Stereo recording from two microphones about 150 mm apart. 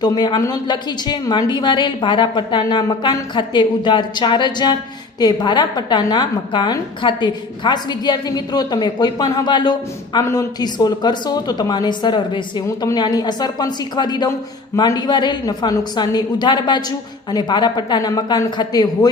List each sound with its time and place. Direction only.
0.0 s a woman's voice: 25° left (ahead or behind)